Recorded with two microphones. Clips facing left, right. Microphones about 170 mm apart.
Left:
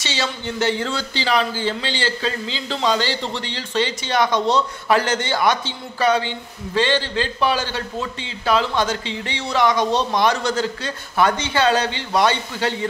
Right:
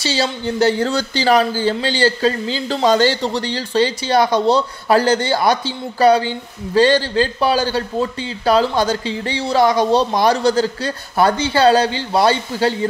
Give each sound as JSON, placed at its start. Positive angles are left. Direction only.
{"t": 0.0, "sound": "speech", "side_deg": -35}